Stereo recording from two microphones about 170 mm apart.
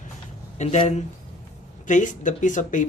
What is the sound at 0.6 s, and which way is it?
Speech, 40° left (ahead or behind).